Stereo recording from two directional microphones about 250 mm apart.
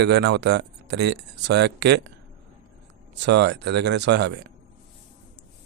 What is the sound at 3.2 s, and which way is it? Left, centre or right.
Speech, right.